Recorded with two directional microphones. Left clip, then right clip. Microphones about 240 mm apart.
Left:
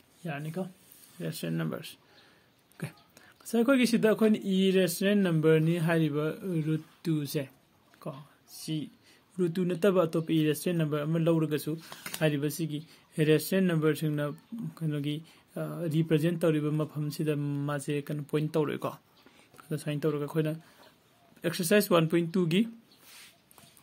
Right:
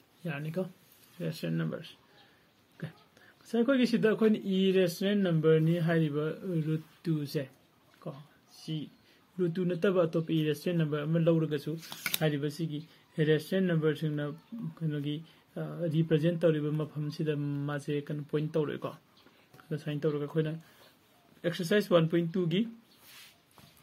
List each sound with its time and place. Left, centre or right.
0.2 s speech: centre; by 11.7 s left
11.8 s speech: right
12.3 s speech: left